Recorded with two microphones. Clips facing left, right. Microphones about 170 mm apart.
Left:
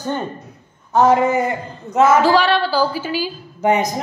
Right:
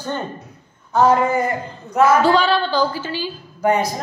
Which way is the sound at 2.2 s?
Centre (ahead or behind).